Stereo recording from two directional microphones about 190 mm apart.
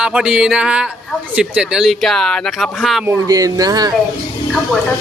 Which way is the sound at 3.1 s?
20° right (ahead or behind).